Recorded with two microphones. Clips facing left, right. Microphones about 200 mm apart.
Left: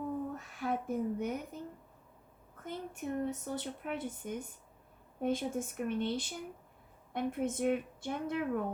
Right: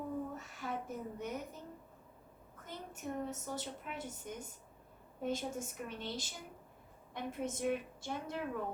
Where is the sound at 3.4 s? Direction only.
55° left (ahead or behind).